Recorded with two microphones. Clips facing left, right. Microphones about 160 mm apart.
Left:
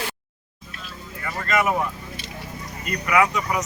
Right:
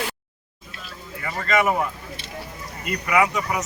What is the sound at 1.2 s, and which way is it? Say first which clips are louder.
Speech: right 1 dB; 10° right (ahead or behind).